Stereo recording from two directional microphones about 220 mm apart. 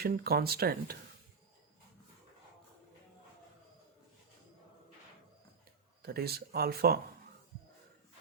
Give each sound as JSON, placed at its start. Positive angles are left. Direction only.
{"t": 0.0, "sound": "speech", "side_deg": -45}
{"t": 6.0, "sound": "speech", "side_deg": -45}